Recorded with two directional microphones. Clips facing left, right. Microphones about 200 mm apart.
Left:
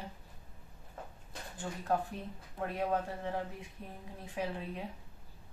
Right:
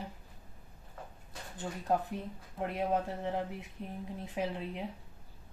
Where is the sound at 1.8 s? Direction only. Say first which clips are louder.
Right 2 dB; 20° right (ahead or behind).